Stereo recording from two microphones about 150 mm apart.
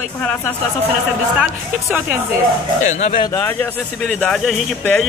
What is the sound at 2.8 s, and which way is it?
Speech, 50° left (ahead or behind).